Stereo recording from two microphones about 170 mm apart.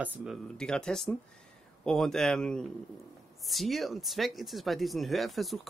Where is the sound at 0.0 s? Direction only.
5° right (ahead or behind).